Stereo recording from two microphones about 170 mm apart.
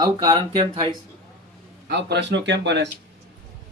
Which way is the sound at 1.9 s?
80° right.